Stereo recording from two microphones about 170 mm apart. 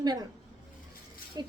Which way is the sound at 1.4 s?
25° right (ahead or behind).